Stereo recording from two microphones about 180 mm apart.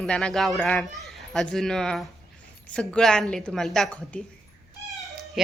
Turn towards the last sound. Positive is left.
turn(degrees=5)  # may be behind; listen again after turning